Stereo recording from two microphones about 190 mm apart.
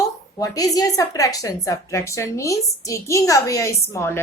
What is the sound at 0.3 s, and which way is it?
A woman's voice, 20° left (ahead or behind).